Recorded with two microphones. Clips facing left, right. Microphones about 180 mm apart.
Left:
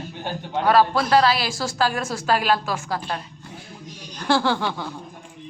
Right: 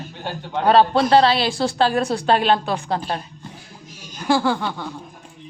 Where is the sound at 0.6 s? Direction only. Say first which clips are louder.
Right 3 dB; 30° right (ahead or behind).